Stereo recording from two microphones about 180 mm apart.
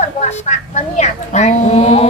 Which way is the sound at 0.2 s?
40° left (ahead or behind).